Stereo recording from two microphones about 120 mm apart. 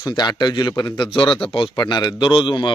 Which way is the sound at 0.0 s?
35° left (ahead or behind).